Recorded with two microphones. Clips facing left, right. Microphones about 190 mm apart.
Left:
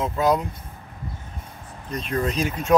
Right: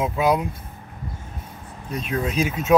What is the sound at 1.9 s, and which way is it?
Speech, 5° right (ahead or behind).